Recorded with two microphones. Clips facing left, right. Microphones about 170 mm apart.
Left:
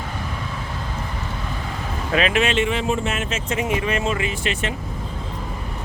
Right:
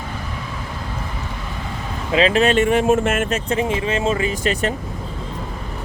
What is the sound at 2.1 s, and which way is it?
Speech, 30° right (ahead or behind).